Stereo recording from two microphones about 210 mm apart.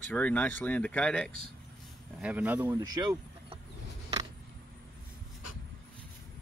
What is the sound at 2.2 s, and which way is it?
Speech, 5° right (ahead or behind).